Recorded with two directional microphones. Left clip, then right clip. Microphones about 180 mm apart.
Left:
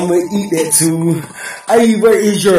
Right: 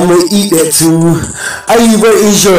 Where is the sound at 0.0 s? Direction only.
25° right (ahead or behind).